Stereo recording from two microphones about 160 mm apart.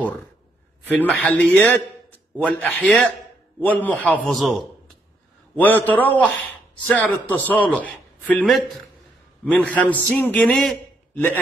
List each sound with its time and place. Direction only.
1.0 s a man's voice: 10° left (ahead or behind)
5.6 s a man's voice: 10° left (ahead or behind)